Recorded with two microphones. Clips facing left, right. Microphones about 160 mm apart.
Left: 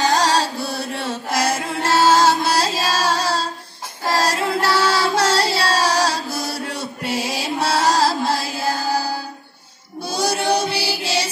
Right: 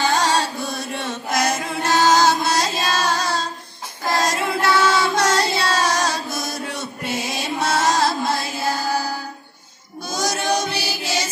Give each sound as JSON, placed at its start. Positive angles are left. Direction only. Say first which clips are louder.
{"t": 0.0, "sound": "chant", "louder": "left 2 dB", "side_deg": 35}
{"t": 1.3, "sound": "music", "louder": "even", "side_deg": 30}
{"t": 6.8, "sound": "music", "louder": "left 2 dB", "side_deg": 10}
{"t": 7.7, "sound": "chant", "louder": "left 2 dB", "side_deg": 30}
{"t": 8.5, "sound": "music", "louder": "left 1 dB", "side_deg": 10}
{"t": 10.0, "sound": "choir", "louder": "left 3 dB", "side_deg": 30}